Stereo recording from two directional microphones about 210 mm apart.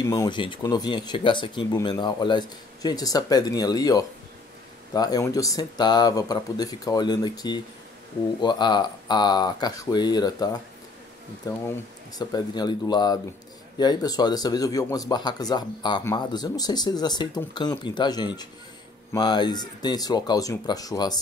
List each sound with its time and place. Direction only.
0.1 s speech: 20° left (ahead or behind)